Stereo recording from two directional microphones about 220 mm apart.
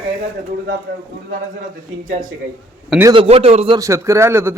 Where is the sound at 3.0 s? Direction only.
20° right (ahead or behind).